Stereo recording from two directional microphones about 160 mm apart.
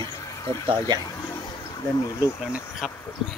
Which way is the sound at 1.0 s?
25° left (ahead or behind).